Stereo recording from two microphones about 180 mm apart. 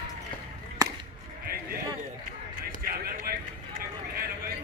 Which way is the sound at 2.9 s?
55° right (ahead or behind).